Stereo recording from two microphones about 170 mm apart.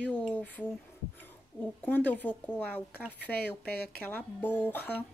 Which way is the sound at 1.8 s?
10° left (ahead or behind).